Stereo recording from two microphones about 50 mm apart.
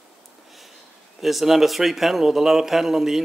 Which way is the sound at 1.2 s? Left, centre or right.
Centre.